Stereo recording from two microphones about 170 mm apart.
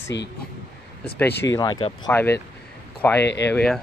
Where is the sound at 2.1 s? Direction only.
10° left (ahead or behind).